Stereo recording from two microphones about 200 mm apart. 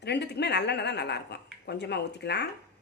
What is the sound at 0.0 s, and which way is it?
A woman's voice, 55° left (ahead or behind).